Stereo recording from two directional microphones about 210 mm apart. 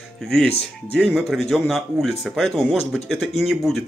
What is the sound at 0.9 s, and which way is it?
Speech, centre (ahead or behind).